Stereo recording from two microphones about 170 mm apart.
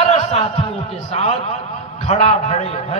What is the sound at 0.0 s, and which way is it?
A man's voice, 40° left (ahead or behind).